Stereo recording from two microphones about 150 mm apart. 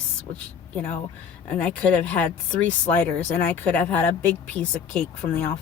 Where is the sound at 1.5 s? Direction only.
10° left (ahead or behind).